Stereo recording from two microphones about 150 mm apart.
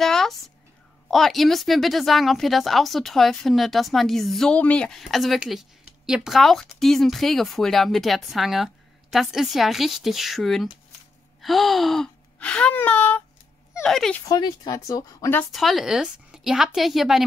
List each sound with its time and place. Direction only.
0.0 s a sound: centre (ahead or behind)
1.1 s speech: centre (ahead or behind)
14.2 s speech: 25° left (ahead or behind)
15.5 s speech: centre (ahead or behind)